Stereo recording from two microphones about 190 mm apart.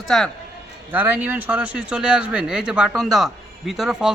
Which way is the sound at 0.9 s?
10° right (ahead or behind).